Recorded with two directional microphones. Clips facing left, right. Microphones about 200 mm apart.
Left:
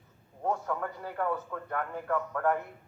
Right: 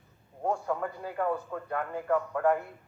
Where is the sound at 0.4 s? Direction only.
15° right (ahead or behind).